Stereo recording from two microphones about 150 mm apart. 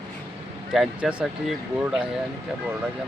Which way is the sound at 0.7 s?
5° right (ahead or behind).